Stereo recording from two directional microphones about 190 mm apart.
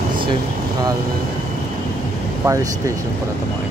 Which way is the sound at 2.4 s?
15° right (ahead or behind).